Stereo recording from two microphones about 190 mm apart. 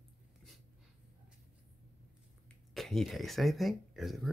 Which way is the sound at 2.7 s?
Centre (ahead or behind).